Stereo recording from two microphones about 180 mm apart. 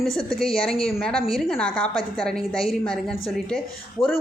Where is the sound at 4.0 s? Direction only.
30° left (ahead or behind).